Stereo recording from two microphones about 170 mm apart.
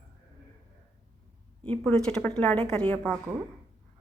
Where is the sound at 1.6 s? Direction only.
5° left (ahead or behind).